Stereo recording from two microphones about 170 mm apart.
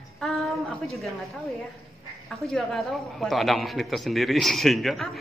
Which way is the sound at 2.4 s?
5° left (ahead or behind).